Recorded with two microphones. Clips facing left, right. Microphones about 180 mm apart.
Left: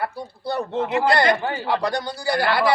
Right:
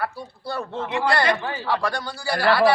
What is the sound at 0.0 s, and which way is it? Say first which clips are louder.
A man's voice: left 2 dB; 20° left (ahead or behind).